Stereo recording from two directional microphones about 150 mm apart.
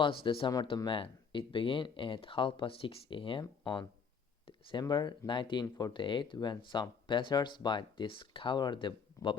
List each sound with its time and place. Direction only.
0.0 s speech: 35° left (ahead or behind)